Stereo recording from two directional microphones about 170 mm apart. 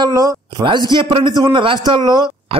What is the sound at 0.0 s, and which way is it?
A man's voice, 20° right (ahead or behind).